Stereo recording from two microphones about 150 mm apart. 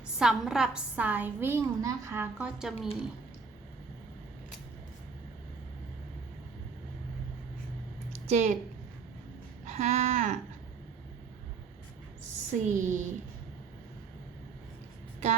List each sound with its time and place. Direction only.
0.2 s a woman's voice: 5° right (ahead or behind)
2.6 s speech: 5° right (ahead or behind)
8.3 s a woman's voice: 50° right (ahead or behind)
9.6 s a sound: 45° right (ahead or behind)
12.6 s a woman's voice: 55° right (ahead or behind)